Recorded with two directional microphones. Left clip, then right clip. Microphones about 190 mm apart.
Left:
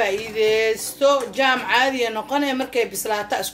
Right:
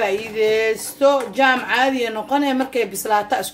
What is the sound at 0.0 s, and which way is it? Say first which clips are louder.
Speech: right 1 dB; 40° right (ahead or behind).